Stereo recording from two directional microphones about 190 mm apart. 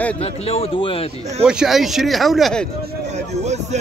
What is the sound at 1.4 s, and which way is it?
Speech, 5° right (ahead or behind).